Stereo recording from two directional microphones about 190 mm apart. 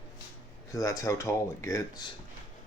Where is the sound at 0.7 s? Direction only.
15° left (ahead or behind).